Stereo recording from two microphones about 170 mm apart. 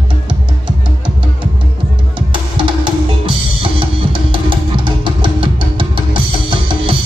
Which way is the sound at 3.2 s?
30° right (ahead or behind).